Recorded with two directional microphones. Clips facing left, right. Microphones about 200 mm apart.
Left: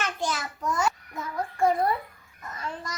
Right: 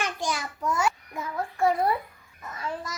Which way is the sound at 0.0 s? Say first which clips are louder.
Even; 15° right (ahead or behind).